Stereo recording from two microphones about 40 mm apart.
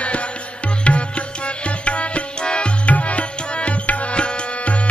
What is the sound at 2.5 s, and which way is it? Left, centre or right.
Music, left.